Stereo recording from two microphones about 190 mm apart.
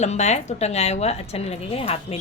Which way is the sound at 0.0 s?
35° left (ahead or behind).